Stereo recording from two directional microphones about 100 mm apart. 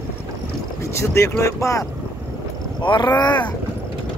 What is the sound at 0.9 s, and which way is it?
Speech, 30° left (ahead or behind).